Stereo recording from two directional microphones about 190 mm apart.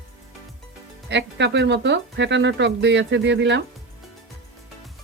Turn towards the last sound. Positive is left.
turn(degrees=-70)  # may be behind; listen again after turning